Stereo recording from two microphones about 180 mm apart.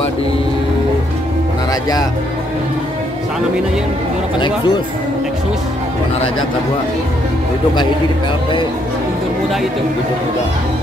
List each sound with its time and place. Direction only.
1.7 s music: 20° left (ahead or behind)
4.4 s speech: 25° left (ahead or behind)